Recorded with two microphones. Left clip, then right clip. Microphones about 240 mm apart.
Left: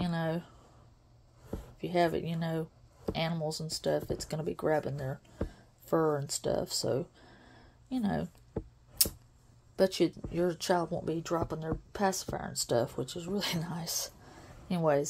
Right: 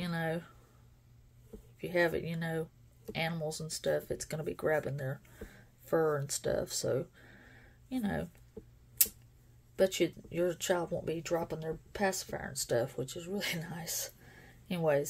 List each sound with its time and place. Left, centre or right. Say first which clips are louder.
0.0 s a sound: left 2 dB; centre
1.8 s speech: left 2 dB; centre
9.8 s speech: left 2 dB; centre